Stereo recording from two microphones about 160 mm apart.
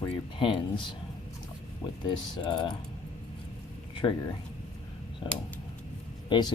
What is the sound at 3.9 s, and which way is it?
Speech, 30° left (ahead or behind).